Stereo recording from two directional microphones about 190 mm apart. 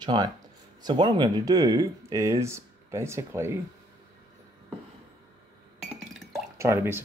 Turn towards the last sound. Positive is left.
turn(degrees=-15)  # may be behind; listen again after turning